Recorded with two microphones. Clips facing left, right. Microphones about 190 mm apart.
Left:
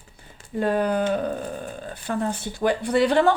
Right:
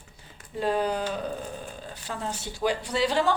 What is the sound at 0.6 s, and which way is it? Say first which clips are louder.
A woman's voice: left 4 dB; 55° left (ahead or behind).